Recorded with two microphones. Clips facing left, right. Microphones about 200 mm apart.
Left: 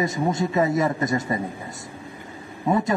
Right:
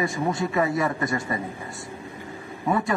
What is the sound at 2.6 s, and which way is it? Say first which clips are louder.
Speech: left 3 dB; 20° left (ahead or behind).